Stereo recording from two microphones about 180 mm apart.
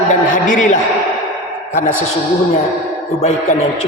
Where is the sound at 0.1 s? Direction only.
45° left (ahead or behind).